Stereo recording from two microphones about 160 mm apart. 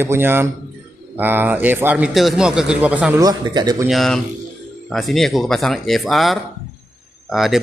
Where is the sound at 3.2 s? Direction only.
25° right (ahead or behind).